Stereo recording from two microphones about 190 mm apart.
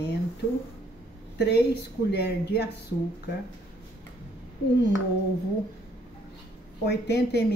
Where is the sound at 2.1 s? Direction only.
60° left (ahead or behind).